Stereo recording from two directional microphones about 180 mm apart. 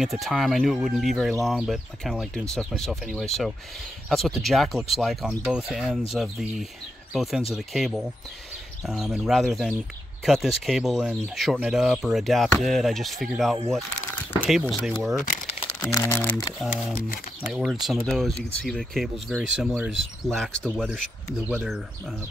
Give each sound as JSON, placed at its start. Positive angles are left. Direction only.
{"t": 0.0, "sound": "speech", "side_deg": 0}
{"t": 15.9, "sound": "speech", "side_deg": 15}
{"t": 16.5, "sound": "speech", "side_deg": 0}